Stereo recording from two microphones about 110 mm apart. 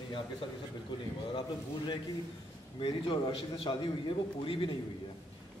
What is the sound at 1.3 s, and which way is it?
Speech, 45° left (ahead or behind).